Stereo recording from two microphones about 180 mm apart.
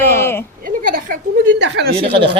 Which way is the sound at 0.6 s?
50° right (ahead or behind).